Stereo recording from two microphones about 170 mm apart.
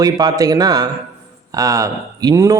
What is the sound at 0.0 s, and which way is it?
Speech, 25° right (ahead or behind).